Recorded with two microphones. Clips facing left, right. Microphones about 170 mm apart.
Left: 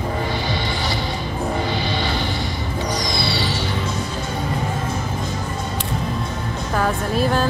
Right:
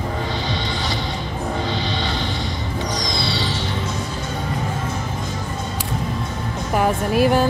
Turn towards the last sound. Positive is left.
turn(degrees=-10)  # may be behind; listen again after turning